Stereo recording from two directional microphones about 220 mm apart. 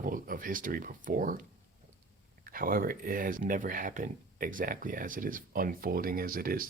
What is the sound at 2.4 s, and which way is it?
Speech, 40° right (ahead or behind).